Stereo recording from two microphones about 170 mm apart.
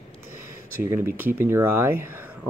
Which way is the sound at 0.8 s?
15° right (ahead or behind).